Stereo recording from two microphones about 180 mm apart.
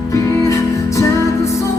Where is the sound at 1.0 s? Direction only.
15° left (ahead or behind).